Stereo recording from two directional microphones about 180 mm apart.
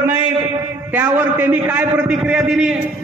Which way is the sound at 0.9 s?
10° right (ahead or behind).